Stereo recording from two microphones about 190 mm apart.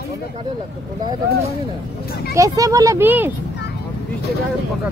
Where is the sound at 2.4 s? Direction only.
20° right (ahead or behind).